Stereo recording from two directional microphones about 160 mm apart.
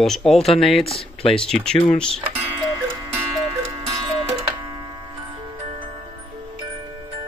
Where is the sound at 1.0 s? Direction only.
35° left (ahead or behind).